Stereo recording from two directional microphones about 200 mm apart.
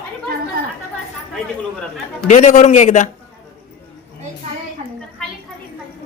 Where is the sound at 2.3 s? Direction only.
35° left (ahead or behind).